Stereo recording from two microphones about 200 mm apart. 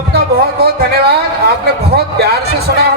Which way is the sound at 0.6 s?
55° right (ahead or behind).